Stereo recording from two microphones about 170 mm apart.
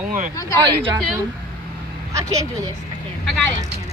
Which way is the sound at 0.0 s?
50° right (ahead or behind).